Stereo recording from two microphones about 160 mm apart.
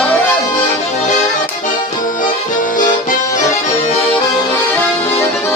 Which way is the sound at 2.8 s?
55° left (ahead or behind).